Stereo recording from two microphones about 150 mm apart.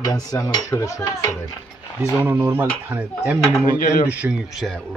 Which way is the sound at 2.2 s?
15° right (ahead or behind).